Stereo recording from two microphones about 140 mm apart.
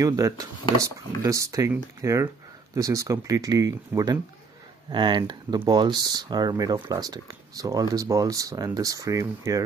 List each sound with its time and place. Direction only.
0.0 s speech: 25° right (ahead or behind)